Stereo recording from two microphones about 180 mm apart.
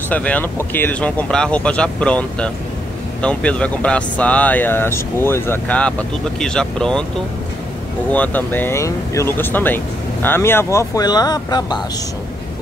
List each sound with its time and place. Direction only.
0.1 s speech: 10° left (ahead or behind)
8.1 s speech: 10° left (ahead or behind)